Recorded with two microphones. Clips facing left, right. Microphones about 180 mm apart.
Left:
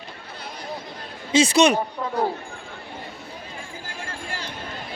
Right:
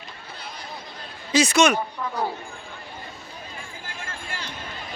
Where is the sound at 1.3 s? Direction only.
30° left (ahead or behind).